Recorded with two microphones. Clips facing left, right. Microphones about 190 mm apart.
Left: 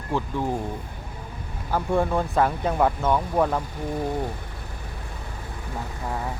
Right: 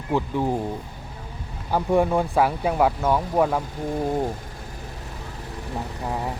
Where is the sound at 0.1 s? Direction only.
15° right (ahead or behind).